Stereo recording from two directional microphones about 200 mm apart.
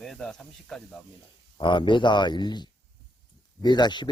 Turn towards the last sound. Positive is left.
turn(degrees=20)  # may be behind; listen again after turning